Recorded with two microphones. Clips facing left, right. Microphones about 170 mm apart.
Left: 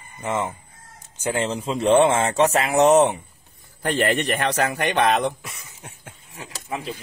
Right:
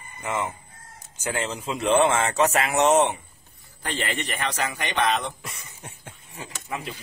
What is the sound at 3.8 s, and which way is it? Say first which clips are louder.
A man's voice: left 8 dB; 55° left (ahead or behind).